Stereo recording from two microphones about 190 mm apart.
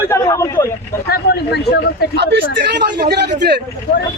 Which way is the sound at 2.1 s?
65° right (ahead or behind).